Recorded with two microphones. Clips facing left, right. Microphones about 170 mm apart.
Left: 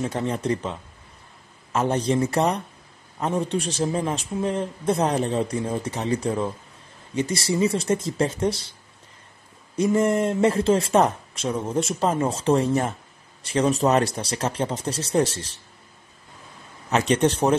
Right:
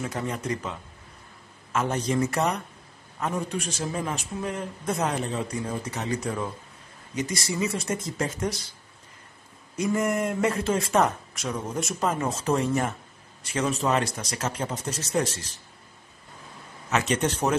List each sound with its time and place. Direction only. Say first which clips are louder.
0.0 s a man's voice: left 5 dB; 30° left (ahead or behind)
9.8 s a man's voice: left 5 dB; 30° left (ahead or behind)
16.9 s a man's voice: left 5 dB; 30° left (ahead or behind)